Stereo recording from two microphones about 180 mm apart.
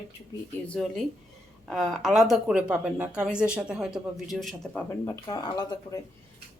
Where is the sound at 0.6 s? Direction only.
5° left (ahead or behind).